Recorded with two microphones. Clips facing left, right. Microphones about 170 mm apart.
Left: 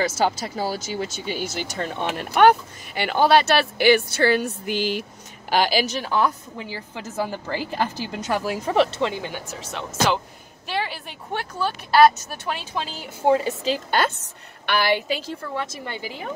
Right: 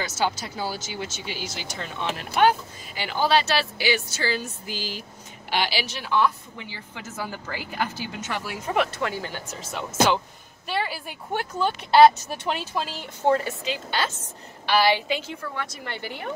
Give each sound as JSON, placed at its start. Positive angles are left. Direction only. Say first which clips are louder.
{"t": 0.2, "sound": "speech", "louder": "left 4 dB", "side_deg": 45}
{"t": 5.5, "sound": "a woman's voice", "louder": "left 6 dB", "side_deg": 45}
{"t": 7.2, "sound": "speech", "louder": "left 6 dB", "side_deg": 30}
{"t": 9.5, "sound": "a woman's voice", "louder": "left 1 dB", "side_deg": -5}
{"t": 11.3, "sound": "speech", "louder": "right 1 dB", "side_deg": -20}
{"t": 13.0, "sound": "a woman's voice", "louder": "left 3 dB", "side_deg": 10}
{"t": 13.7, "sound": "a woman's voice", "louder": "left 7 dB", "side_deg": 50}
{"t": 15.5, "sound": "speech", "louder": "left 4 dB", "side_deg": 20}